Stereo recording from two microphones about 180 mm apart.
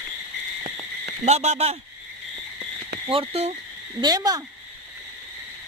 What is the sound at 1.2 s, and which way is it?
Speech, 35° right (ahead or behind).